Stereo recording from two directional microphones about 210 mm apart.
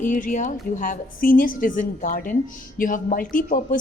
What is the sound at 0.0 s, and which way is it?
A woman's voice, 40° left (ahead or behind).